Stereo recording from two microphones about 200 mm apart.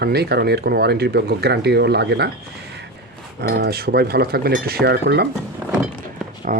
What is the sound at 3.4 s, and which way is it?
Speech, 55° right (ahead or behind).